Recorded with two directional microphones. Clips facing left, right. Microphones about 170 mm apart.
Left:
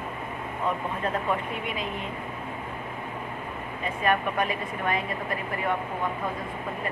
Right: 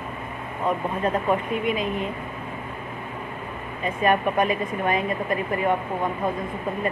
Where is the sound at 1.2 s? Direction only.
20° right (ahead or behind).